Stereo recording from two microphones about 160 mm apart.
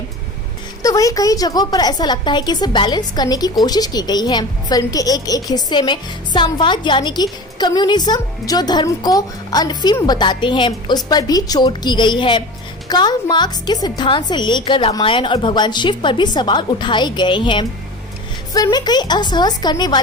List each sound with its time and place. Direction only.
0.8 s a woman's voice: 20° left (ahead or behind)